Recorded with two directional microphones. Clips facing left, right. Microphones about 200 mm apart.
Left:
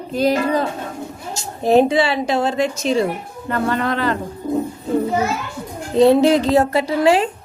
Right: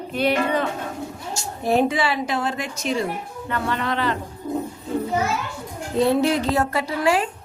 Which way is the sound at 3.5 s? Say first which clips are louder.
Left 5 dB; 45° left (ahead or behind).